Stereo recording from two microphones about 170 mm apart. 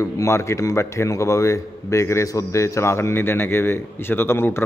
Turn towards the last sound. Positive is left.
turn(degrees=15)  # may be behind; listen again after turning